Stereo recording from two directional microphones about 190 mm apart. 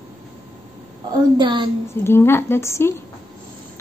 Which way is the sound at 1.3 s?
25° right (ahead or behind).